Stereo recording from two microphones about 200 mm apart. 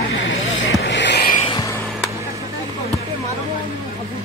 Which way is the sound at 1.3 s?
30° left (ahead or behind).